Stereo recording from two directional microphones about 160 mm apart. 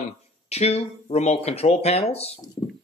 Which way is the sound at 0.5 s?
40° left (ahead or behind).